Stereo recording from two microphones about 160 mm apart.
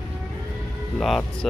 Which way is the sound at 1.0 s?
Centre (ahead or behind).